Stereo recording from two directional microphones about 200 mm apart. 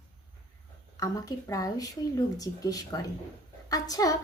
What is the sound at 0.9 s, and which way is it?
A woman's voice, 15° left (ahead or behind).